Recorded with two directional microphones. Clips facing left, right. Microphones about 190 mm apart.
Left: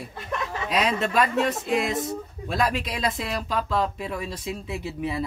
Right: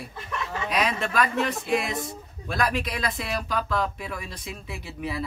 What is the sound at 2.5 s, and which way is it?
Speech, 25° left (ahead or behind).